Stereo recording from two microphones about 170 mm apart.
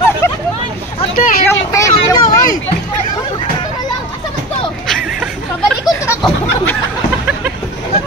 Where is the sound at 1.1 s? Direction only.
55° left (ahead or behind).